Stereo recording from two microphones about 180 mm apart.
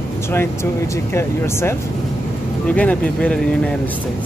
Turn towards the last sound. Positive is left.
turn(degrees=10)  # may be behind; listen again after turning